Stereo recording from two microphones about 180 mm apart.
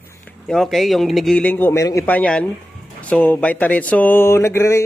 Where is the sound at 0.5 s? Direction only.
Centre (ahead or behind).